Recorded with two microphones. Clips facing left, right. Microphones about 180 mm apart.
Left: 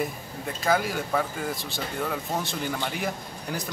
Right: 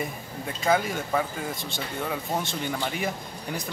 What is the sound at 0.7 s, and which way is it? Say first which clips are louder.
Speech: right 1 dB; centre (ahead or behind).